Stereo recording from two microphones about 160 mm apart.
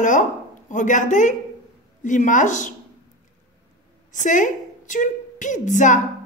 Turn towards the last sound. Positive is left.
turn(degrees=50)  # may be behind; listen again after turning